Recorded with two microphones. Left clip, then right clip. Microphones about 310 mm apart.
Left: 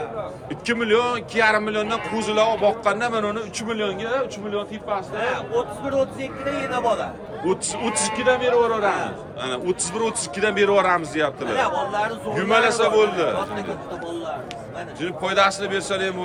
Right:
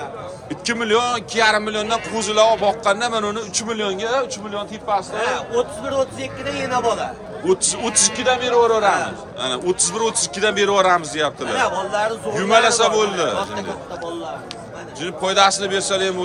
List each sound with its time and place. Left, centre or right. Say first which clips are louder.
0.6 s a man's voice: right 1 dB; centre
7.4 s a man's voice: right 4 dB; centre
11.4 s a man's voice: right 2 dB; right
12.3 s a man's voice: right 4 dB; centre
15.0 s a man's voice: right 4 dB; centre